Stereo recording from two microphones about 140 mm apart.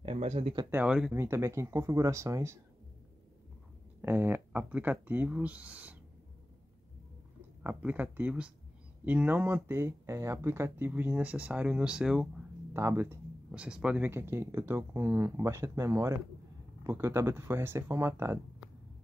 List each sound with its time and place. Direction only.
0.0 s speech: 40° right (ahead or behind)
0.7 s speech: 10° right (ahead or behind)
1.1 s speech: 20° right (ahead or behind)
4.0 s speech: 15° right (ahead or behind)
7.6 s speech: 10° right (ahead or behind)
12.7 s speech: 15° right (ahead or behind)